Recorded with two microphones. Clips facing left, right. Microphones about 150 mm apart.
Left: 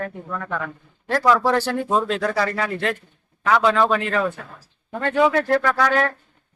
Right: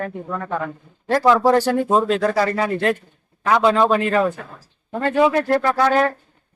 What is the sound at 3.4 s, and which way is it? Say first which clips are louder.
Speech: right 2 dB; 20° right (ahead or behind).